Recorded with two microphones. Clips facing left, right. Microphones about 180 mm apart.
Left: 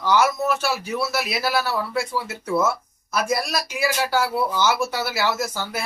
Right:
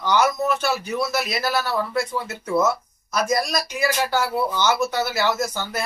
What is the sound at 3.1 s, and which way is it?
Speech, 5° left (ahead or behind).